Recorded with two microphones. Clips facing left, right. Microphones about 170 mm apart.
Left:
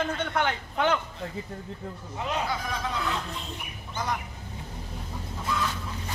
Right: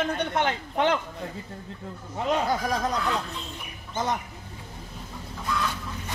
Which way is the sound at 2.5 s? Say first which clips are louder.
Right 5 dB; 40° right (ahead or behind).